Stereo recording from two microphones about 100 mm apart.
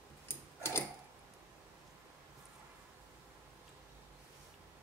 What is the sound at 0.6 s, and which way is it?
Mechanisms, 25° left (ahead or behind).